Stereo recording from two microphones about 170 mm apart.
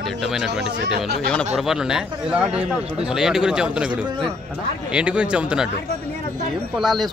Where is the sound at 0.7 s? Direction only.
70° right (ahead or behind).